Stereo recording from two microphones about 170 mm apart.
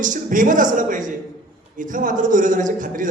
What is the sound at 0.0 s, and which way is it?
A man's voice, 50° right (ahead or behind).